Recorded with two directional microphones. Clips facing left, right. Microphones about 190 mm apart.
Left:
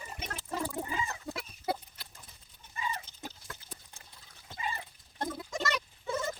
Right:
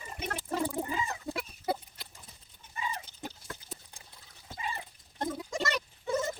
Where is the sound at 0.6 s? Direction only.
25° right (ahead or behind).